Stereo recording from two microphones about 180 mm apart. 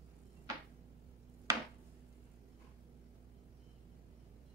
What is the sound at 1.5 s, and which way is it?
Chopping, 20° right (ahead or behind).